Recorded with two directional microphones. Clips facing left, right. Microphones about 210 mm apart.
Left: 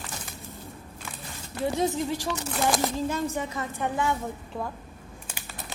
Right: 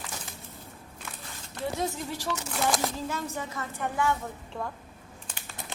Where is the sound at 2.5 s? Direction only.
Centre (ahead or behind).